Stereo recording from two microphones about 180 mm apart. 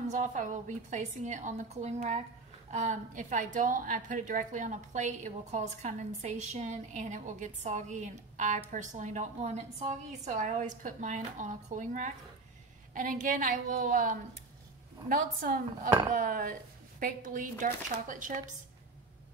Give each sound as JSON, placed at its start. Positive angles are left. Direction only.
{"t": 0.1, "sound": "a woman's voice", "side_deg": -45}